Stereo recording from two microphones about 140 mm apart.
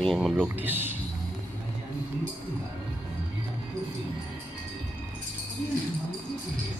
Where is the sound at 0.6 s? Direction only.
15° right (ahead or behind).